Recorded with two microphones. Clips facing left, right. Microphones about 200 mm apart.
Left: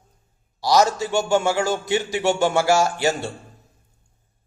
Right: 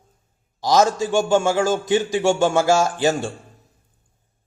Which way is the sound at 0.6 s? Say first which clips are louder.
Right 1 dB; 15° right (ahead or behind).